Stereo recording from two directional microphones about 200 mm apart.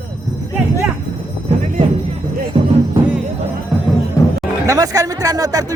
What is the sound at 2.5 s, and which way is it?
Music, 25° right (ahead or behind).